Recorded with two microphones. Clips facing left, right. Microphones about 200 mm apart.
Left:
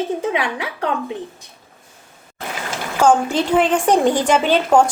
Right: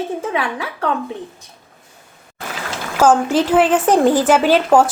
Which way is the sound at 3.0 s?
5° right (ahead or behind).